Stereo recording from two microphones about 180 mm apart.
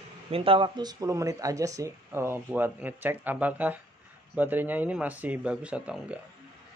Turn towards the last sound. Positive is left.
turn(degrees=-5)  # may be behind; listen again after turning